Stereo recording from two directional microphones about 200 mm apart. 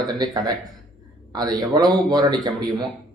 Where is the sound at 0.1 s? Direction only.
20° right (ahead or behind).